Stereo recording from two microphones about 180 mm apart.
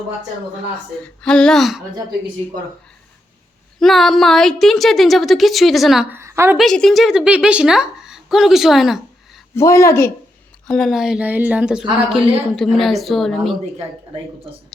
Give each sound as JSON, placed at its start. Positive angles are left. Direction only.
{"t": 1.2, "sound": "a woman's voice", "side_deg": 5}
{"t": 3.8, "sound": "a woman's voice", "side_deg": 0}
{"t": 6.1, "sound": "a woman's voice", "side_deg": -15}
{"t": 6.6, "sound": "a woman's voice", "side_deg": 0}
{"t": 9.6, "sound": "a woman's voice", "side_deg": 15}
{"t": 10.7, "sound": "a woman's voice", "side_deg": 0}